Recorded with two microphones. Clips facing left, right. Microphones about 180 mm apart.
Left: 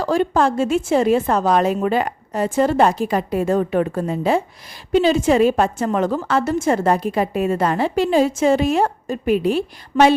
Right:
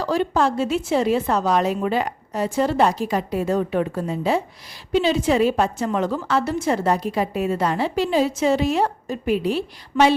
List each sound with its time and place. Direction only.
0.0 s a woman's voice: 50° left (ahead or behind)